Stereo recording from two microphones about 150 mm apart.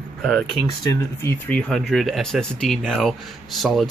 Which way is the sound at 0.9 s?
15° left (ahead or behind).